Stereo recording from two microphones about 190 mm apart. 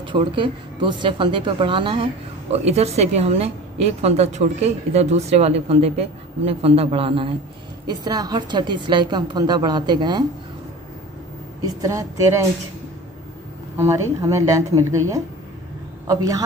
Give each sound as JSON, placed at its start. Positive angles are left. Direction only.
{"t": 0.0, "sound": "a woman's voice", "side_deg": -25}
{"t": 11.6, "sound": "speech", "side_deg": -20}
{"t": 13.7, "sound": "a woman's voice", "side_deg": -15}